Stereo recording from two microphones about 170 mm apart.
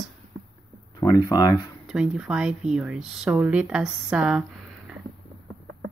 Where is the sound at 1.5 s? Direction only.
5° right (ahead or behind).